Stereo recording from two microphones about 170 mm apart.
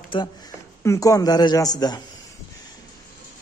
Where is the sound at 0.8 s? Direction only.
20° left (ahead or behind).